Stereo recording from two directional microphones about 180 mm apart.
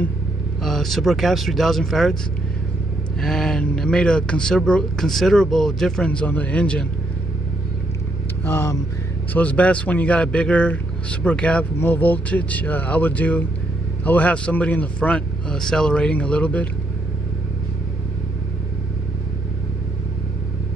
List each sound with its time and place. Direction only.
0.7 s speech: centre (ahead or behind)
3.2 s speech: centre (ahead or behind)
8.5 s a man's voice: 10° left (ahead or behind)